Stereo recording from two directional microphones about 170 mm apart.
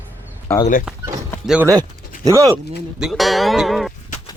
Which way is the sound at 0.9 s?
5° right (ahead or behind).